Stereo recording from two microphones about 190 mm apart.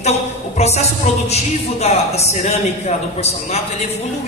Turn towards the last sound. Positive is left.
turn(degrees=35)  # may be behind; listen again after turning